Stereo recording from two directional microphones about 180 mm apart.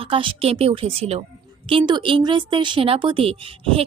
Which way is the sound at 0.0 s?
30° right (ahead or behind).